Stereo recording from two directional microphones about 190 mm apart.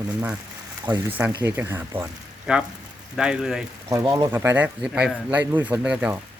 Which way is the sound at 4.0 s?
15° right (ahead or behind).